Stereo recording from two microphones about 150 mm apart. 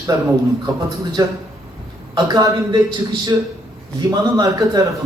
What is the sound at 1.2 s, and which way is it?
Speech, 25° right (ahead or behind).